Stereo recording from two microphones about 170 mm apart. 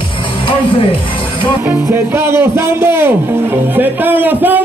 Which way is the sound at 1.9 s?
15° right (ahead or behind).